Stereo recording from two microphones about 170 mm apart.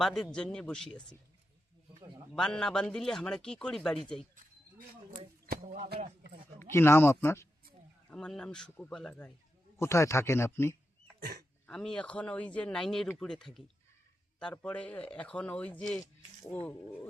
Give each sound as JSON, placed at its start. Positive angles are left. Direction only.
{"t": 0.0, "sound": "speech", "side_deg": 5}
{"t": 2.3, "sound": "speech", "side_deg": 5}
{"t": 5.5, "sound": "speech", "side_deg": -50}
{"t": 6.6, "sound": "speech", "side_deg": 15}
{"t": 8.1, "sound": "speech", "side_deg": 5}
{"t": 11.2, "sound": "speech", "side_deg": -55}
{"t": 11.6, "sound": "speech", "side_deg": 5}
{"t": 16.0, "sound": "speech", "side_deg": 20}